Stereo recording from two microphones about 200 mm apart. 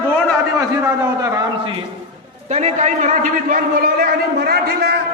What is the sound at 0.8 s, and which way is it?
Speech, 10° right (ahead or behind).